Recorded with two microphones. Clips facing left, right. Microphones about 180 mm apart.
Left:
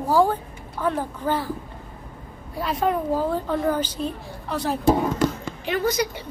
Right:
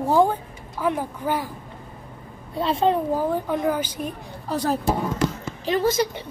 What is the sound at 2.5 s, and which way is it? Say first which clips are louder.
Speech: right 3 dB; 25° right (ahead or behind).